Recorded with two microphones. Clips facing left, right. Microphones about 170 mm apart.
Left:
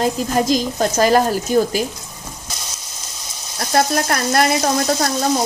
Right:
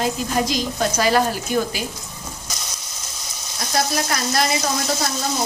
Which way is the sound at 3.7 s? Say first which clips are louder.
Left 5 dB; 55° left (ahead or behind).